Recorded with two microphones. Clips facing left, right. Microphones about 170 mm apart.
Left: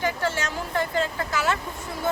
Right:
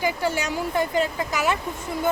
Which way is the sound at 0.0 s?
10° right (ahead or behind).